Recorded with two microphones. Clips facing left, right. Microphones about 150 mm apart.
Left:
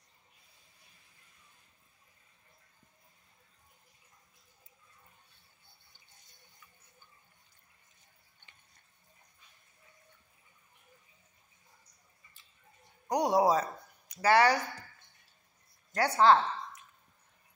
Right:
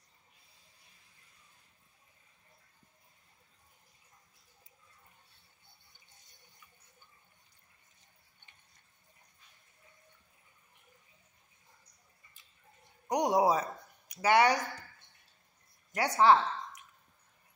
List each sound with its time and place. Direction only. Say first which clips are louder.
13.1 s speech: left 1 dB; 15° right (ahead or behind)
15.9 s a woman's voice: left 1 dB; 15° right (ahead or behind)